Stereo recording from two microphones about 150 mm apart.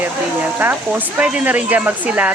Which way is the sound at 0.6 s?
10° right (ahead or behind).